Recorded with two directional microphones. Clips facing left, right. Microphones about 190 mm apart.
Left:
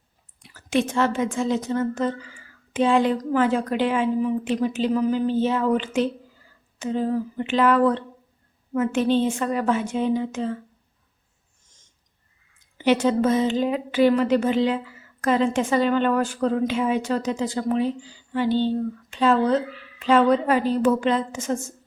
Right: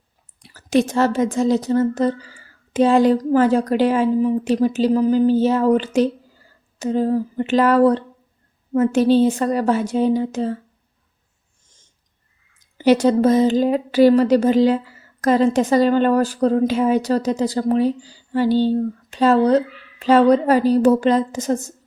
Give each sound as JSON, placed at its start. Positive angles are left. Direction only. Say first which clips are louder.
{"t": 0.4, "sound": "a woman's voice", "louder": "right 5 dB", "side_deg": -40}
{"t": 12.5, "sound": "a woman's voice", "louder": "right 5 dB", "side_deg": -40}